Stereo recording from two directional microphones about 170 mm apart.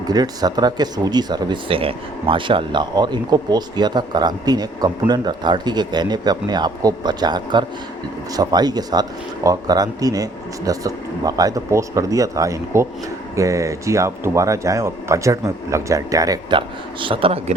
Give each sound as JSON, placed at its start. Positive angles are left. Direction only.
{"t": 0.0, "sound": "speech", "side_deg": -25}